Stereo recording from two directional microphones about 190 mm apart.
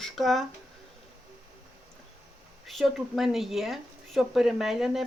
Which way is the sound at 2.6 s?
Centre (ahead or behind).